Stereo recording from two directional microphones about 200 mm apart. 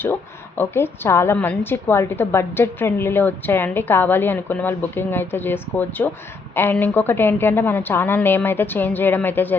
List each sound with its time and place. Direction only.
0.0 s a woman's voice: 10° left (ahead or behind)